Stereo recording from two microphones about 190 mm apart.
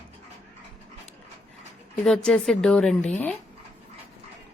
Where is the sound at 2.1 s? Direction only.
Centre (ahead or behind).